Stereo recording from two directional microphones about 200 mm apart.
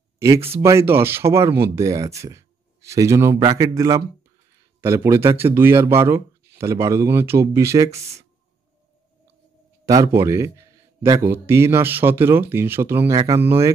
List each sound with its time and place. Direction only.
0.5 s speech: 15° right (ahead or behind)
9.8 s speech: 20° right (ahead or behind)